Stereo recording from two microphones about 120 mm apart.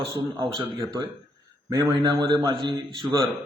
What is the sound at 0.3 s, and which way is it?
A man's voice, 40° right (ahead or behind).